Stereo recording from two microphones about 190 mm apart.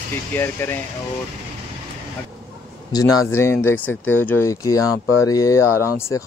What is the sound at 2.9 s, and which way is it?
Speech, 20° left (ahead or behind).